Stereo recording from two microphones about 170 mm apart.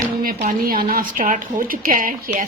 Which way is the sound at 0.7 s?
60° right (ahead or behind).